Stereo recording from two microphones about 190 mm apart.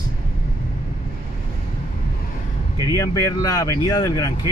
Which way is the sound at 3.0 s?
20° left (ahead or behind).